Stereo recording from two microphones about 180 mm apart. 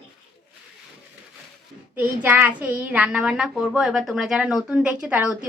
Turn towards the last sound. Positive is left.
turn(degrees=-5)  # may be behind; listen again after turning